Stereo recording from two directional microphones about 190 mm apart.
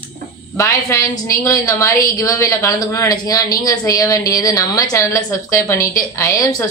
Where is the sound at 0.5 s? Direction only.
15° left (ahead or behind).